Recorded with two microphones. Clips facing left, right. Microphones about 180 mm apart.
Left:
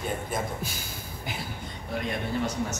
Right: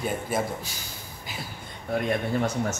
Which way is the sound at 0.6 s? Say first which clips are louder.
Left 3 dB; 55° left (ahead or behind).